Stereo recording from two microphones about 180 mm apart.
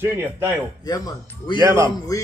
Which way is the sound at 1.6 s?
15° right (ahead or behind).